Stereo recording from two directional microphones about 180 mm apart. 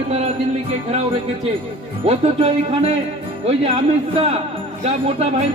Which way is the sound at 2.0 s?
30° right (ahead or behind).